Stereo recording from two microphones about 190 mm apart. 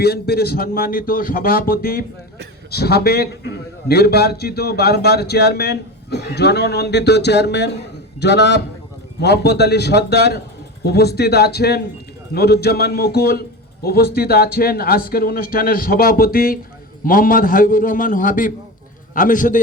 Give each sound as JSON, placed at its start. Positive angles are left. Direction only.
{"t": 0.0, "sound": "a man's voice", "side_deg": 55}